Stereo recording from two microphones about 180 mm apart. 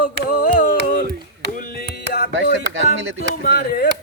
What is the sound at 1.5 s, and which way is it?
Music, 55° left (ahead or behind).